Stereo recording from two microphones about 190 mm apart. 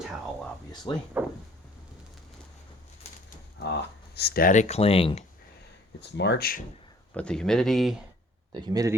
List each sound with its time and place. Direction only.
0.9 s speech: 25° left (ahead or behind)
3.6 s speech: 60° left (ahead or behind); by 5.2 s 30° left (ahead or behind)
6.0 s speech: 65° left (ahead or behind)
7.1 s speech: 5° left (ahead or behind)
8.5 s speech: 20° right (ahead or behind)